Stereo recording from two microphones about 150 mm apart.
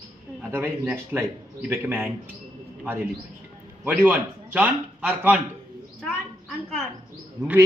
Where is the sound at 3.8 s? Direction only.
10° right (ahead or behind).